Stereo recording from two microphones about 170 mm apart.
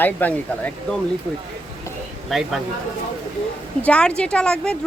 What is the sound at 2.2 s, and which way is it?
Speech, centre (ahead or behind).